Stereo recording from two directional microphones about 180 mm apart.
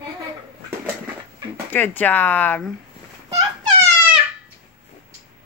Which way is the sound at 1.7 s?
10° left (ahead or behind).